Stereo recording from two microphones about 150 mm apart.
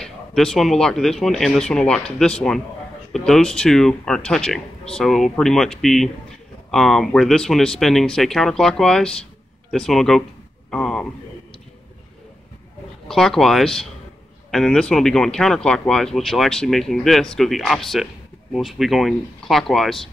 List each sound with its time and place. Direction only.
0.0 s speech: 5° left (ahead or behind)
10.7 s a sound: 5° left (ahead or behind)
13.1 s speech: centre (ahead or behind)